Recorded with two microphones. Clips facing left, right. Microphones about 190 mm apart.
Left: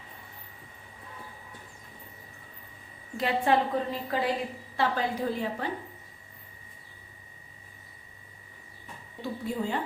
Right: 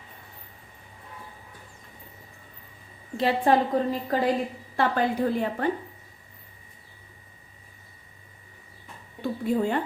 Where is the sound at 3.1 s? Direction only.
35° right (ahead or behind).